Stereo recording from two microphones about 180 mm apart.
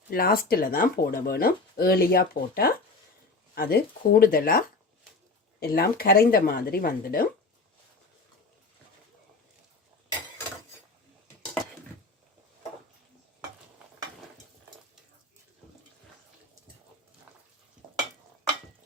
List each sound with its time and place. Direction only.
0.1 s speech: 55° left (ahead or behind)